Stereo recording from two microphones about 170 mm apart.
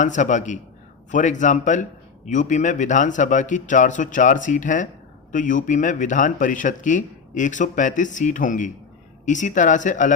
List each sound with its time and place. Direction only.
0.0 s a man's voice: 45° left (ahead or behind)